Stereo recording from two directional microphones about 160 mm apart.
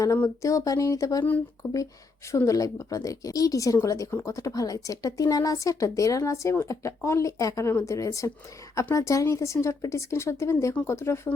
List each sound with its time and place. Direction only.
0.0 s speech: 20° left (ahead or behind)